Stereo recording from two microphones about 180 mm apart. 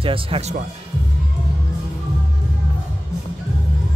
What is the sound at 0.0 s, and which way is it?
Speech, 30° right (ahead or behind).